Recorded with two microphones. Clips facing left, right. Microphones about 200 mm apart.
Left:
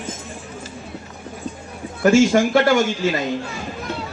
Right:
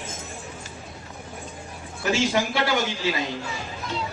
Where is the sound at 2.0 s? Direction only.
50° left (ahead or behind).